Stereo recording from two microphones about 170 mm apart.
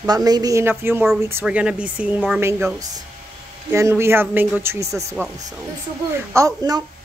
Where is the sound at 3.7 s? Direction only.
15° right (ahead or behind).